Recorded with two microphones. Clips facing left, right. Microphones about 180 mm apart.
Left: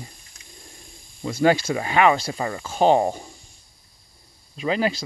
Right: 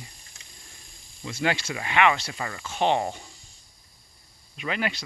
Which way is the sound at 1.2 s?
40° left (ahead or behind).